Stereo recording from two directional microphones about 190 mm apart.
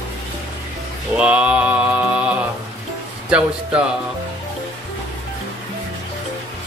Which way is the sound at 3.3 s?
5° right (ahead or behind).